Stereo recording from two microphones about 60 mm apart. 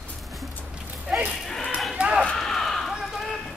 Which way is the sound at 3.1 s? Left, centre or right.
Centre.